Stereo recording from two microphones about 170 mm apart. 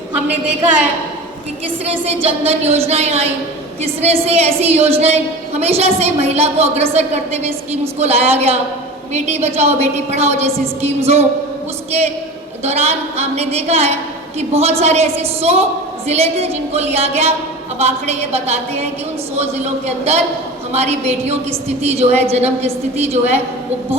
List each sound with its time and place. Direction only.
1.8 s a woman's voice: 35° right (ahead or behind)
12.6 s a woman's voice: 40° right (ahead or behind)